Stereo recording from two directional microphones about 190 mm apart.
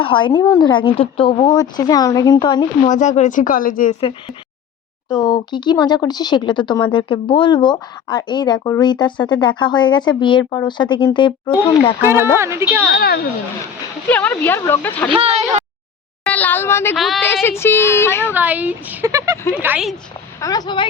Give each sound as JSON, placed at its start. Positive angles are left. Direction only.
{"t": 0.0, "sound": "speech", "side_deg": 25}
{"t": 2.9, "sound": "speech", "side_deg": 40}
{"t": 5.0, "sound": "speech", "side_deg": 20}
{"t": 12.0, "sound": "speech", "side_deg": -10}
{"t": 12.9, "sound": "speech", "side_deg": 55}
{"t": 14.1, "sound": "speech", "side_deg": 10}
{"t": 15.1, "sound": "speech", "side_deg": -30}
{"t": 16.3, "sound": "speech", "side_deg": 10}
{"t": 18.3, "sound": "speech", "side_deg": -10}
{"t": 20.4, "sound": "speech", "side_deg": 20}